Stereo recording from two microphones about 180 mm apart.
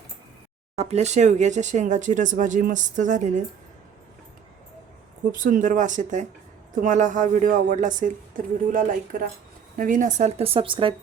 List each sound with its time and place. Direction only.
0.8 s speech: 35° right (ahead or behind)
5.3 s speech: 45° right (ahead or behind); by 10.9 s 30° right (ahead or behind)